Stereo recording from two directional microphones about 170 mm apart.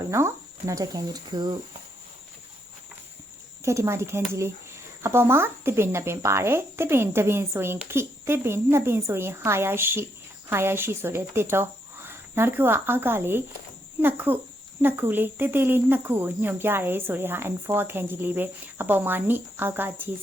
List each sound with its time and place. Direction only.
0.0 s speech: 15° right (ahead or behind)
3.6 s speech: 15° right (ahead or behind)